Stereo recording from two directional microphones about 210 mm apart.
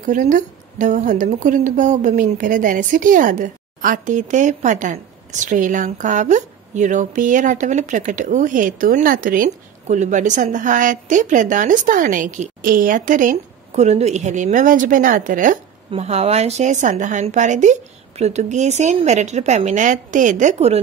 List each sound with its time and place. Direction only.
0.0 s a woman's voice: 40° right (ahead or behind)